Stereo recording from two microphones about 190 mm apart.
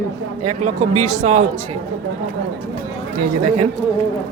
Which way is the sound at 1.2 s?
35° right (ahead or behind).